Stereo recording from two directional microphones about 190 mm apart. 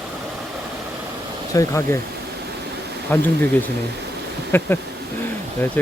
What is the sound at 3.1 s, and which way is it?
Speech, 10° left (ahead or behind).